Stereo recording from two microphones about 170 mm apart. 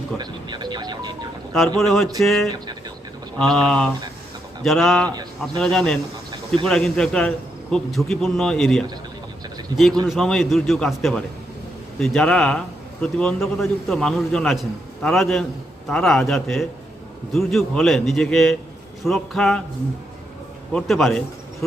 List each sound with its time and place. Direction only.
0.2 s music: 25° right (ahead or behind)
1.8 s a man's voice: centre (ahead or behind)
20.7 s a man's voice: centre (ahead or behind)